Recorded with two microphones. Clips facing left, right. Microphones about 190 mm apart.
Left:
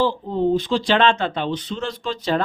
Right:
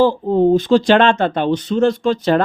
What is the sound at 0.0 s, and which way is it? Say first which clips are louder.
Speech: right 7 dB; 45° right (ahead or behind).